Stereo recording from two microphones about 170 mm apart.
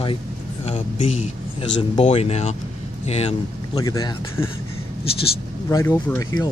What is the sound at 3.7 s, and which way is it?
Speech, 20° left (ahead or behind).